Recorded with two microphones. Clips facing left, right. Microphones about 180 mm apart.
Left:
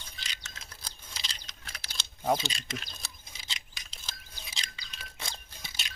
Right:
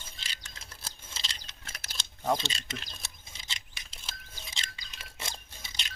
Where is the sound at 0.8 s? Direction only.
5° right (ahead or behind).